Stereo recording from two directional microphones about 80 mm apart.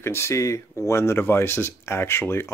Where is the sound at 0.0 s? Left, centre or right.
Left.